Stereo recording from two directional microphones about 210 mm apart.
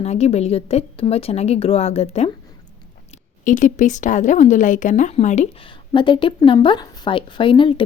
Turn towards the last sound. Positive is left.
turn(degrees=25)  # may be behind; listen again after turning